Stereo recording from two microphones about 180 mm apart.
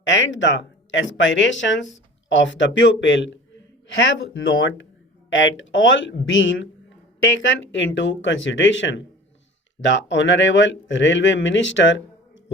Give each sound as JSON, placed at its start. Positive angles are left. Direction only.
{"t": 0.0, "sound": "speech", "side_deg": 90}